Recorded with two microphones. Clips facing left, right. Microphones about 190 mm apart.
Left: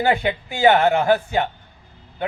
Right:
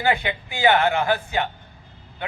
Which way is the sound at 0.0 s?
40° left (ahead or behind).